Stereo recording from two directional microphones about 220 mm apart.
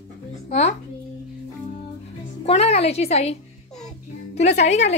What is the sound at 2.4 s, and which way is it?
Speech, 25° left (ahead or behind).